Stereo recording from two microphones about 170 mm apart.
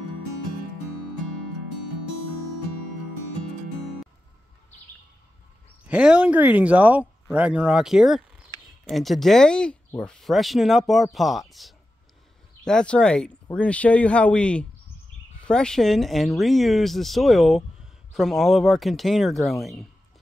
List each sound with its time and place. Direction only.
5.9 s speech: 5° right (ahead or behind)